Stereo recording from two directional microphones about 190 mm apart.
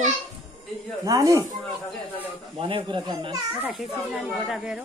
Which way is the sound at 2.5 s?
30° right (ahead or behind).